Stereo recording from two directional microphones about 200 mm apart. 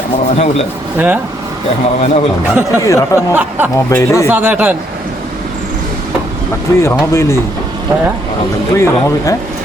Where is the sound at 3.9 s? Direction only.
15° left (ahead or behind).